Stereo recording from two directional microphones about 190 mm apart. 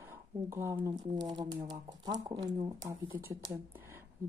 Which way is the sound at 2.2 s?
20° right (ahead or behind).